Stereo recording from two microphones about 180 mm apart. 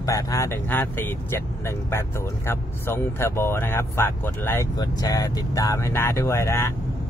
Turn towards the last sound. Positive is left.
turn(degrees=15)  # may be behind; listen again after turning